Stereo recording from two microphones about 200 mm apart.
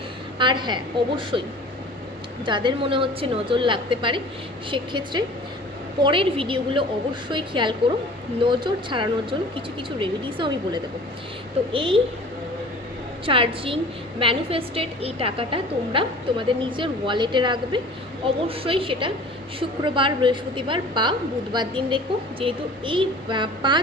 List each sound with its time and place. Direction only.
0.3 s a woman's voice: 25° right (ahead or behind)
13.2 s a woman's voice: 25° right (ahead or behind)